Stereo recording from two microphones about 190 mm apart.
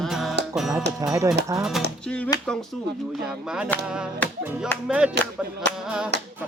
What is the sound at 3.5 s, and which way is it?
Music, 5° right (ahead or behind).